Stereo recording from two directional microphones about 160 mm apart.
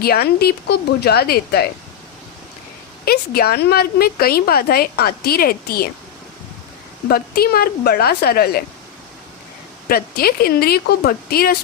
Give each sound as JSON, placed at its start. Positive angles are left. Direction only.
{"t": 0.0, "sound": "a woman's voice", "side_deg": 75}
{"t": 3.0, "sound": "a woman's voice", "side_deg": 75}
{"t": 7.1, "sound": "a woman's voice", "side_deg": 70}
{"t": 9.9, "sound": "a woman's voice", "side_deg": 70}